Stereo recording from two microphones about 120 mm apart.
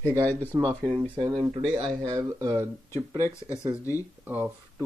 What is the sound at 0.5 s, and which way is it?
Speech, 20° right (ahead or behind).